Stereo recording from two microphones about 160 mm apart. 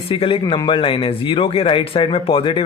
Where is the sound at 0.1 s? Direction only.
35° left (ahead or behind).